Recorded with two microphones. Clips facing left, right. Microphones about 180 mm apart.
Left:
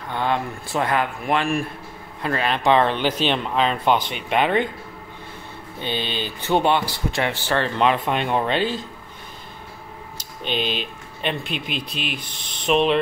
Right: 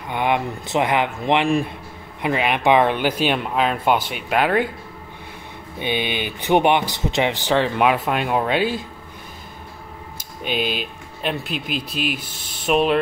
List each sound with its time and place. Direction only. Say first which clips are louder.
0.1 s speech: right 2 dB; 15° right (ahead or behind)
5.8 s speech: right 3 dB; 15° right (ahead or behind)
10.1 s speech: right 1 dB; 10° right (ahead or behind)